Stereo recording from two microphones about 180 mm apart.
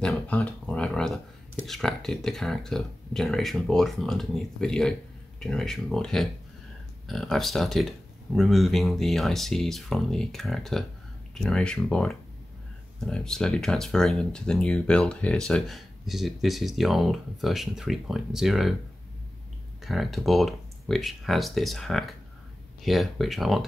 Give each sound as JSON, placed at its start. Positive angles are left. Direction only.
{"t": 0.0, "sound": "a sound", "side_deg": 5}
{"t": 1.7, "sound": "speech", "side_deg": 0}
{"t": 19.8, "sound": "speech", "side_deg": 0}